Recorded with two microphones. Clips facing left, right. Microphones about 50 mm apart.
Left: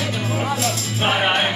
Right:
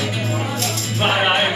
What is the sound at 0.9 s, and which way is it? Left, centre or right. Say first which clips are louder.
Music: right 2 dB; centre.